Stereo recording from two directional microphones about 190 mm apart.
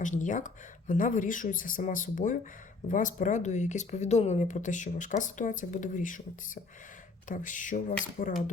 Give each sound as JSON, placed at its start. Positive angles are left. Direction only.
{"t": 0.0, "sound": "speech", "side_deg": 40}